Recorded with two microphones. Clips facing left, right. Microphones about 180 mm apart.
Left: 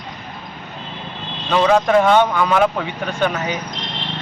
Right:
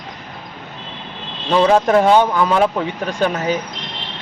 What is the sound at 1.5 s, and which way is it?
Speech, 30° right (ahead or behind).